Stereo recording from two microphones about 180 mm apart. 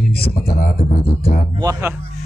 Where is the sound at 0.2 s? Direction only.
60° left (ahead or behind).